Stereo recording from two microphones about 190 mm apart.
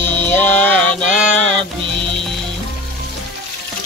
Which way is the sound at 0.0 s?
10° left (ahead or behind).